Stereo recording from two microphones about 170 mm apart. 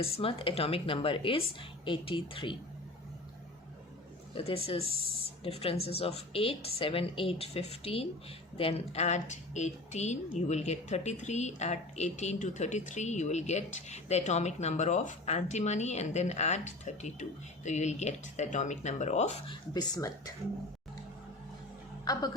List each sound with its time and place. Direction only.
0.0 s a woman's voice: 35° left (ahead or behind)
4.4 s a woman's voice: 35° left (ahead or behind)
19.7 s a woman's voice: 20° left (ahead or behind)
22.0 s a woman's voice: 25° left (ahead or behind)